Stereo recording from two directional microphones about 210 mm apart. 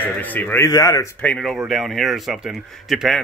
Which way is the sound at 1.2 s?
5° left (ahead or behind).